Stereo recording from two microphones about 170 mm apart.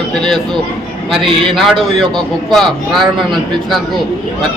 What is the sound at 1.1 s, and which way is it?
Speech, centre (ahead or behind).